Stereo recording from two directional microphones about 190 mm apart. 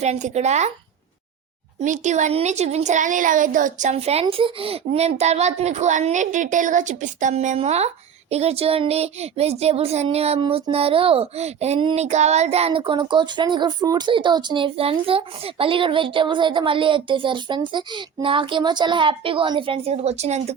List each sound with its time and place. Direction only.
0.0 s a woman's voice: 35° right (ahead or behind)
1.8 s a woman's voice: 40° right (ahead or behind)